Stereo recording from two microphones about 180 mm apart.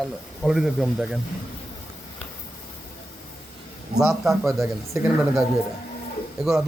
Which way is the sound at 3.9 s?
5° right (ahead or behind).